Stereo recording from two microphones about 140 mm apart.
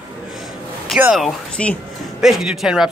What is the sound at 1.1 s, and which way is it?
Speech, 5° left (ahead or behind).